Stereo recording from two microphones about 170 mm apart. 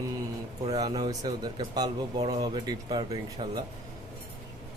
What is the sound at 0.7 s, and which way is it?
Speech, 20° right (ahead or behind).